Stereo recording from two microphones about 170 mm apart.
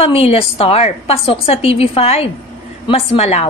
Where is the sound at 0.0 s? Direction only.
35° left (ahead or behind).